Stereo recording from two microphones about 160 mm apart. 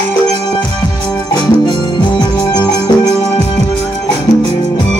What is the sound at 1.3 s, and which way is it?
Music, 30° left (ahead or behind).